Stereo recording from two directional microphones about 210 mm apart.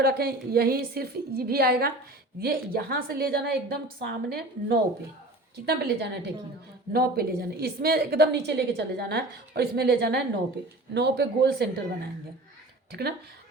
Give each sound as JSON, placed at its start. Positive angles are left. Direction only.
{"t": 0.0, "sound": "a woman's voice", "side_deg": -45}
{"t": 12.9, "sound": "a woman's voice", "side_deg": -50}